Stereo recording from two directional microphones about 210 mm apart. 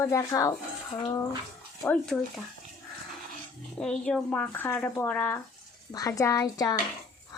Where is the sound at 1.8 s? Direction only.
5° left (ahead or behind).